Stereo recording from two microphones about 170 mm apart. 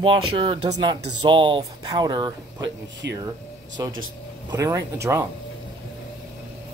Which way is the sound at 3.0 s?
90° right.